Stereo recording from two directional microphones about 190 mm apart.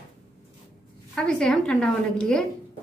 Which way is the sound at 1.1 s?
5° left (ahead or behind).